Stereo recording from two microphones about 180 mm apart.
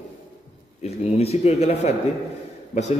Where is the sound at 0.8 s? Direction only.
35° left (ahead or behind).